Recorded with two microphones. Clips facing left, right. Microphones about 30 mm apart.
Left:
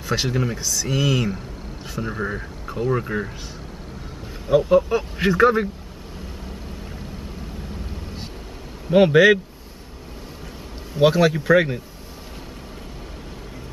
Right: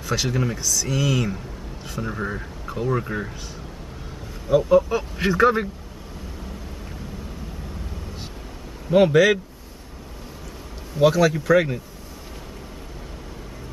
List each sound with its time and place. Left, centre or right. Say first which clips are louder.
0.0 s speech: left 1 dB; centre
0.3 s speech: left 1 dB; centre
0.6 s speech: left 1 dB; centre
4.5 s speech: left 1 dB; centre
8.9 s speech: left 2 dB; left
11.0 s speech: left 1 dB; left